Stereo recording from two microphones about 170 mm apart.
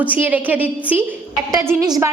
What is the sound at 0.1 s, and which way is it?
Speech, 10° right (ahead or behind).